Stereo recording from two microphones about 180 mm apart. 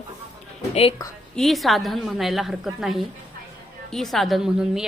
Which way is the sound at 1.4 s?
Centre (ahead or behind).